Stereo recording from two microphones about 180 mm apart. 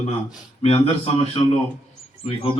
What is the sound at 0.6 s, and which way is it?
Speech, 35° left (ahead or behind).